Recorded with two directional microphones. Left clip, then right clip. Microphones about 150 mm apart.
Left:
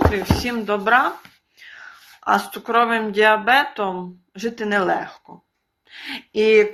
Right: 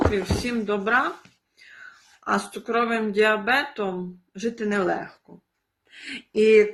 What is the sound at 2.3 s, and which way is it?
Speech, 20° right (ahead or behind).